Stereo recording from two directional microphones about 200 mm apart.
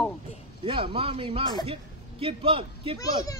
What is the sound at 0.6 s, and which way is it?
Speech, 25° right (ahead or behind).